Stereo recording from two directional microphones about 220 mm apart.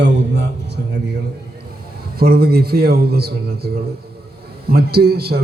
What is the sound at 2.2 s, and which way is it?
A man's voice, 45° right (ahead or behind).